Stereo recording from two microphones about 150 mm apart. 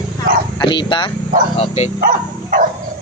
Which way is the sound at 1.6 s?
45° left (ahead or behind).